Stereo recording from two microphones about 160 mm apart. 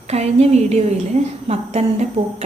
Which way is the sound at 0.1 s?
45° right (ahead or behind).